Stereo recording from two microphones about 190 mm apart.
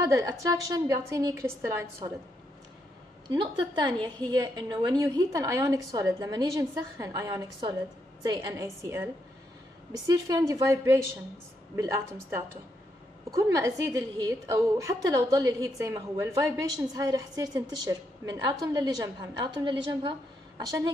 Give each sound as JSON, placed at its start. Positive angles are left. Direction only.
{"t": 0.0, "sound": "a woman's voice", "side_deg": -15}
{"t": 3.3, "sound": "a woman's voice", "side_deg": -25}